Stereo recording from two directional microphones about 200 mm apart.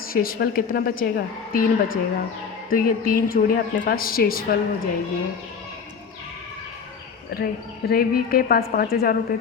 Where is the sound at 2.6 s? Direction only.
45° left (ahead or behind).